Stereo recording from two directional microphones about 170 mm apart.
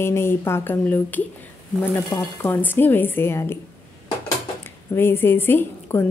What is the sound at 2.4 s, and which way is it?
A woman's voice, 10° left (ahead or behind).